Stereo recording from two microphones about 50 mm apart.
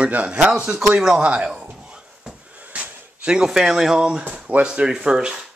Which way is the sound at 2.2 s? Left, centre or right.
Right.